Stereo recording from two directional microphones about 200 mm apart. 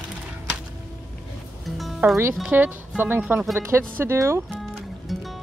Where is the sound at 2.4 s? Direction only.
10° right (ahead or behind).